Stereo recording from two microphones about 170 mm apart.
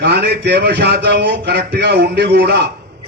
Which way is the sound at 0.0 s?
75° right (ahead or behind).